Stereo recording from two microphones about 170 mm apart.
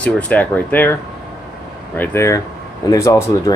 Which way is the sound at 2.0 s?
15° left (ahead or behind).